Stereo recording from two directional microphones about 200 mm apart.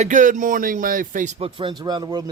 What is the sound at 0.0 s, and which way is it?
Speech, 40° right (ahead or behind).